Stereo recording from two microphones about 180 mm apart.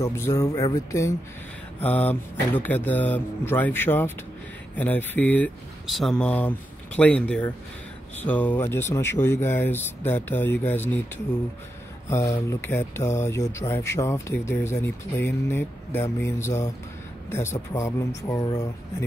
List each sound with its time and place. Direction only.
0.0 s speech: 15° left (ahead or behind)
12.1 s speech: 15° left (ahead or behind)